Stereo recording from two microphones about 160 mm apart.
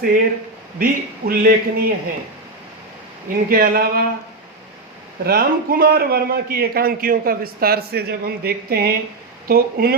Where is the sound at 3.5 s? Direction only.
70° right (ahead or behind).